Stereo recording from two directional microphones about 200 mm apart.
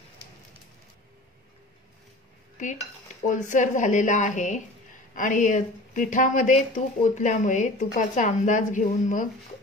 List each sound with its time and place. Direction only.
2.5 s dishes: 40° left (ahead or behind)
3.2 s a woman's voice: 40° left (ahead or behind)